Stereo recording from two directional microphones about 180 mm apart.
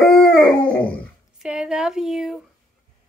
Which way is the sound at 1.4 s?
5° right (ahead or behind).